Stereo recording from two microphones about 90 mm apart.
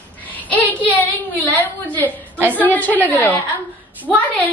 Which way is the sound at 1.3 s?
15° left (ahead or behind).